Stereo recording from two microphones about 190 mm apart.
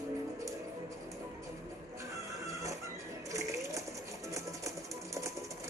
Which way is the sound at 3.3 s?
15° right (ahead or behind).